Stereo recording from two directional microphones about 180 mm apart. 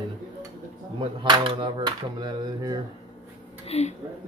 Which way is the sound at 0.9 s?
30° right (ahead or behind).